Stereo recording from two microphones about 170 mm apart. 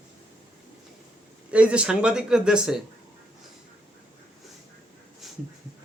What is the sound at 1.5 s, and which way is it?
Speech, 5° right (ahead or behind).